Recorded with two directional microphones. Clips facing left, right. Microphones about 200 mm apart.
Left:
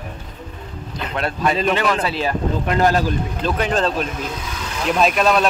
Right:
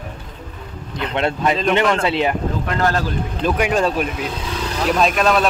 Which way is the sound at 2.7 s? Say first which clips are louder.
Left 3 dB; 15° left (ahead or behind).